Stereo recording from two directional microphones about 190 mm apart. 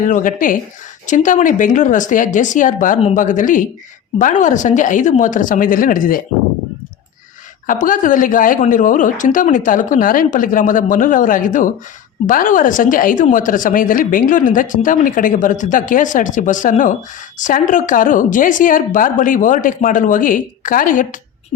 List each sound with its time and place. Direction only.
0.0 s a woman's voice: 45° left (ahead or behind)
7.7 s a woman's voice: 45° left (ahead or behind)